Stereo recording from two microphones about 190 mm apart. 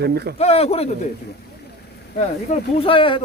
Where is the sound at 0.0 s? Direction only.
55° right (ahead or behind).